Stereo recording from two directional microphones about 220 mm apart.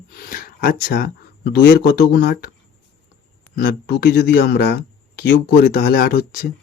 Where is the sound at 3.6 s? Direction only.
45° left (ahead or behind).